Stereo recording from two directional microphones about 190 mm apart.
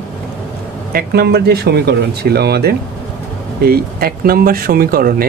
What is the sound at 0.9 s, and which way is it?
Speech, 55° right (ahead or behind).